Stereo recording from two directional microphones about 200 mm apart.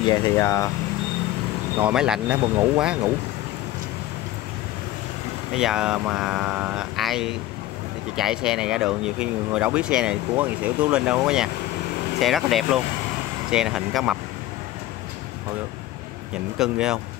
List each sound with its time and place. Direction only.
0.0 s speech: 20° left (ahead or behind)
1.8 s speech: 5° right (ahead or behind)
5.5 s speech: 5° right (ahead or behind)
16.5 s speech: 5° right (ahead or behind)